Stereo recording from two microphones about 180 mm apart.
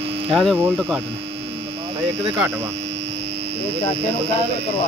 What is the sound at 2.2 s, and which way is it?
Speech, 15° right (ahead or behind).